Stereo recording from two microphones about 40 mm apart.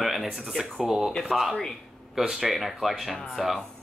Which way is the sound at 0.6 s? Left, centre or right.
Centre.